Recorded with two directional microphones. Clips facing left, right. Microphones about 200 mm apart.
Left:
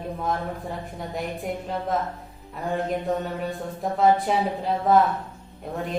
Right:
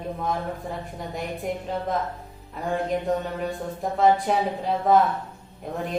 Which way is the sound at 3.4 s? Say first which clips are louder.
Right 1 dB; centre (ahead or behind).